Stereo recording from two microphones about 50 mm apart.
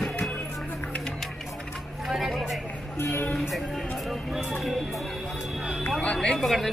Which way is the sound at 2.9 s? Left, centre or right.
Left.